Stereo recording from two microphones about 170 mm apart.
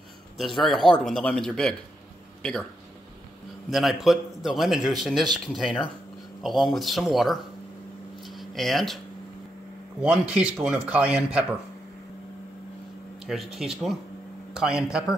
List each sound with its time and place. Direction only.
0.4 s speech: centre (ahead or behind)
3.7 s speech: centre (ahead or behind)
8.2 s a sound: centre (ahead or behind)
10.0 s speech: 5° right (ahead or behind)
13.2 s speech: 5° right (ahead or behind)